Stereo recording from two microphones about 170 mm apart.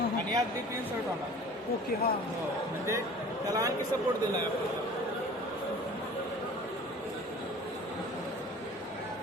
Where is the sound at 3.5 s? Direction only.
20° right (ahead or behind).